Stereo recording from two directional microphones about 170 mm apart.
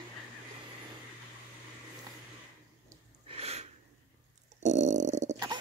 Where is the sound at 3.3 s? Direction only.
35° right (ahead or behind).